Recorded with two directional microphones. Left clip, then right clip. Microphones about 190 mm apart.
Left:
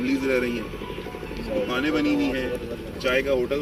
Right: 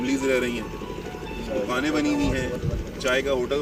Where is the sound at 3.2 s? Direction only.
45° left (ahead or behind).